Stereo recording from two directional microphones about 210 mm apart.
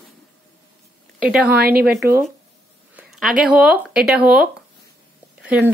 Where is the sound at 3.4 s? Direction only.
5° right (ahead or behind).